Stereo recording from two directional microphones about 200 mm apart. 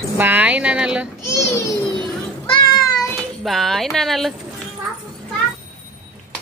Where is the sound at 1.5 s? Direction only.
15° left (ahead or behind).